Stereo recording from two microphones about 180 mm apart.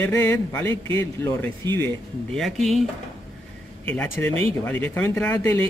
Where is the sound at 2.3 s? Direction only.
Centre (ahead or behind).